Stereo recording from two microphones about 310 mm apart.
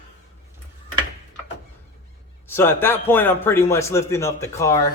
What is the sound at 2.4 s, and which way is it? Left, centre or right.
A man's voice, centre.